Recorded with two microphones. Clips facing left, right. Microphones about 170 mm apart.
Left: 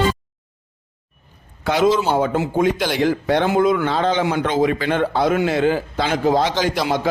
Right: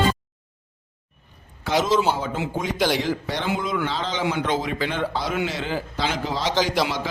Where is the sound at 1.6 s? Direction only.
55° left (ahead or behind).